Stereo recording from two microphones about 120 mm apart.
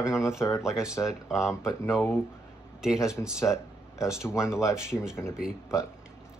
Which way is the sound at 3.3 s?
25° left (ahead or behind).